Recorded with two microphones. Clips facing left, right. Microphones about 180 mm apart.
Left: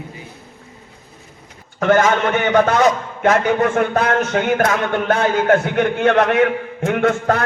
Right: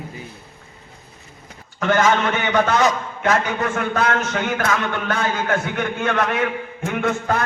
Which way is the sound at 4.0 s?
55° left (ahead or behind).